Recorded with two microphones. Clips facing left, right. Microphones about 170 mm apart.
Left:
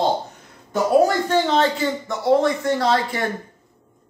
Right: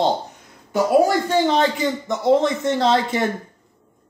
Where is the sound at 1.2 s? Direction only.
15° right (ahead or behind).